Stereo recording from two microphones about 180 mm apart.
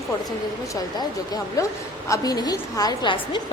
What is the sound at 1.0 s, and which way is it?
A woman's voice, 20° left (ahead or behind).